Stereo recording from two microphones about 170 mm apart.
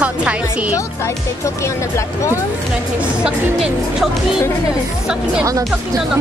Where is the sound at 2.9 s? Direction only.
5° right (ahead or behind).